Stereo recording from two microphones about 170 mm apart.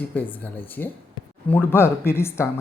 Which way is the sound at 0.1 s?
10° left (ahead or behind).